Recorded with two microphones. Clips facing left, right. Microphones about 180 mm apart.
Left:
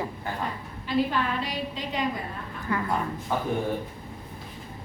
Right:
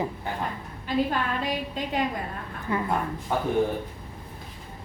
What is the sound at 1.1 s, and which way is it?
Speech, 50° right (ahead or behind).